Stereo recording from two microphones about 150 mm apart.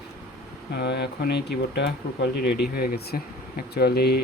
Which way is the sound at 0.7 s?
90° left.